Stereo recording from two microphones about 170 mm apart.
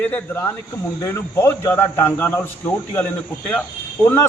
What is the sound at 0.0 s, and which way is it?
A man's voice, 10° left (ahead or behind).